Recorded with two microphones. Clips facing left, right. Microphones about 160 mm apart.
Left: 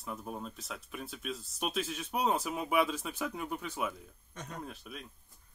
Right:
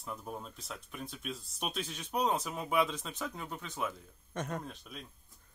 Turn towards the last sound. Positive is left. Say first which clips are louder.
# left 1 dB
turn(degrees=0)  # may be behind; listen again after turning